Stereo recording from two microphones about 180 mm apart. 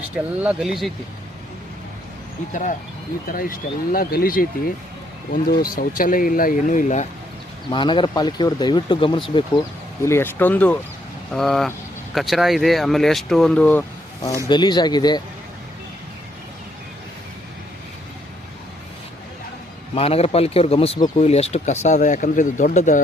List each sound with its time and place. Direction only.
0.4 s speech: centre (ahead or behind)
2.5 s speech: 45° left (ahead or behind)
7.7 s speech: 25° left (ahead or behind)
10.0 s speech: 15° left (ahead or behind)
14.4 s speech: 25° left (ahead or behind)
20.0 s speech: 35° left (ahead or behind)